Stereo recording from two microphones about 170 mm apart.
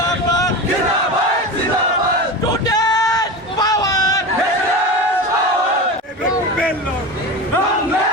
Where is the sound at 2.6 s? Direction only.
25° left (ahead or behind).